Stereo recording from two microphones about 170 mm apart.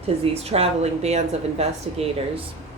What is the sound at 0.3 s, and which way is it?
Speech, 35° right (ahead or behind).